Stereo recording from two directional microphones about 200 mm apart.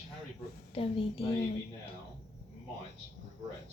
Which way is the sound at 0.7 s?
25° left (ahead or behind).